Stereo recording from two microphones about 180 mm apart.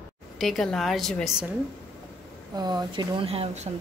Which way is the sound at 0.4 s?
Centre (ahead or behind).